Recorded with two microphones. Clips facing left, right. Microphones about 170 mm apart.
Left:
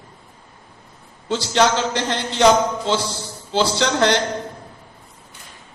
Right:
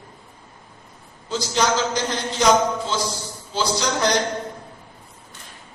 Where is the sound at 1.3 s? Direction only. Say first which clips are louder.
Left 3 dB; 65° left (ahead or behind).